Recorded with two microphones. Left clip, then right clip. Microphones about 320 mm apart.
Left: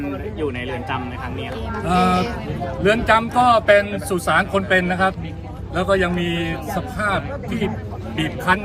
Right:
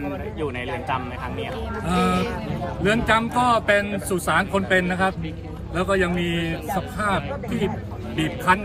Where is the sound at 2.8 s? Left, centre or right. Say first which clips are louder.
Left 4 dB; centre.